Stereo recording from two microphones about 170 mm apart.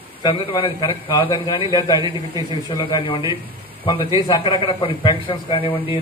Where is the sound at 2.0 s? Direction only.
25° right (ahead or behind).